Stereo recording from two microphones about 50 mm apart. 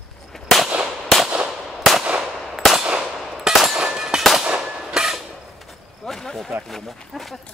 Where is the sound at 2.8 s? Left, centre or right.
Centre.